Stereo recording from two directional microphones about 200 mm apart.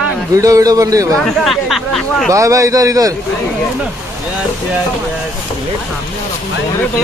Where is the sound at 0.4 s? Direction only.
15° right (ahead or behind).